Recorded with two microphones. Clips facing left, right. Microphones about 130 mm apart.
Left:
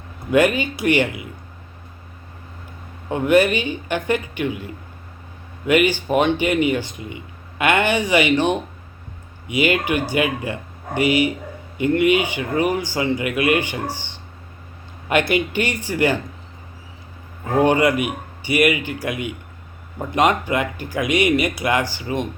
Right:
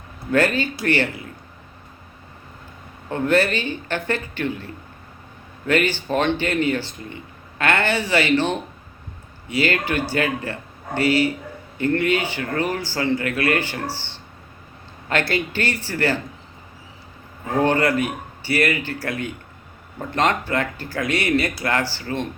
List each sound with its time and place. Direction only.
0.3 s speech: 15° left (ahead or behind)
3.1 s speech: 15° left (ahead or behind)
17.6 s speech: 15° left (ahead or behind)